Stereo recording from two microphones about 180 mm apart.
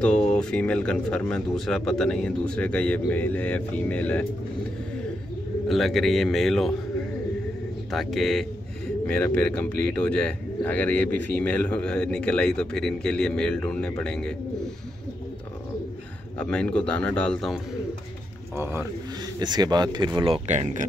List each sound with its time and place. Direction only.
0.0 s speech: 5° left (ahead or behind)
5.7 s speech: centre (ahead or behind)
7.9 s speech: centre (ahead or behind)
16.3 s speech: 5° left (ahead or behind)
18.6 s speech: 15° right (ahead or behind); by 20.8 s 40° right (ahead or behind)